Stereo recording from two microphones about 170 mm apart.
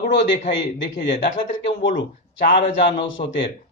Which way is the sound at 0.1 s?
90° left.